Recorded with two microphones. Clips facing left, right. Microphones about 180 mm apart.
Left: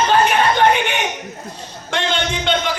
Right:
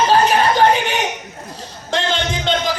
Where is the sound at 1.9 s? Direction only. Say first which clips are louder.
Right 1 dB; 40° right (ahead or behind).